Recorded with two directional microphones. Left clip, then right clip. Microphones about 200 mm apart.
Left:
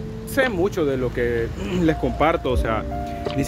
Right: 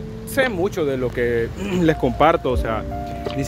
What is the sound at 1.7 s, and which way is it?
Speech, 55° right (ahead or behind).